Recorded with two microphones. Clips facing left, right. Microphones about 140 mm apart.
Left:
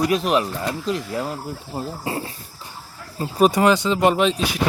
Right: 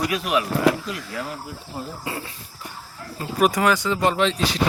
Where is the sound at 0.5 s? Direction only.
75° right (ahead or behind).